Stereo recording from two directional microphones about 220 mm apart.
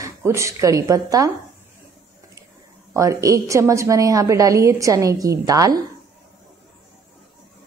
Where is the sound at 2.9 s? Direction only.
15° right (ahead or behind).